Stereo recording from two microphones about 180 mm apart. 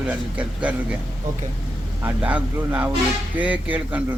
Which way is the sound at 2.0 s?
10° right (ahead or behind).